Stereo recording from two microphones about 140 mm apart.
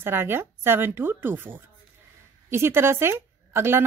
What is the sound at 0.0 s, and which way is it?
Speech, 15° right (ahead or behind).